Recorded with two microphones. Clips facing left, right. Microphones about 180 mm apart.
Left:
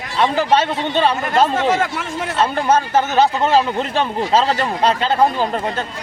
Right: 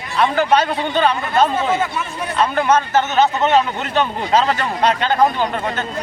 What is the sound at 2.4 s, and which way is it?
Speech, 30° left (ahead or behind).